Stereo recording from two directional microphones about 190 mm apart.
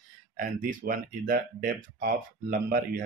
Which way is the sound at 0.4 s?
45° right (ahead or behind).